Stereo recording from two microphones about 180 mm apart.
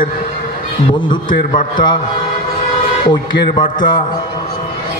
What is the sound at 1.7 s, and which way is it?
Speech, 25° left (ahead or behind).